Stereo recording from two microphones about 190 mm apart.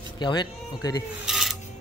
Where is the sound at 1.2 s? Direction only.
Centre (ahead or behind).